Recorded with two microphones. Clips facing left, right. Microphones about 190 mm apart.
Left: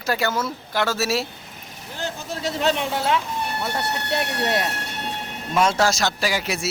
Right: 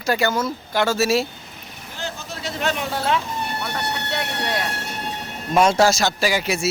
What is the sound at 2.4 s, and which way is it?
Speech, 30° left (ahead or behind).